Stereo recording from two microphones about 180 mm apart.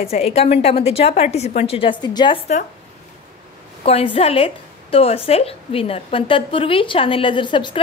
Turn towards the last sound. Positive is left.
turn(degrees=25)  # may be behind; listen again after turning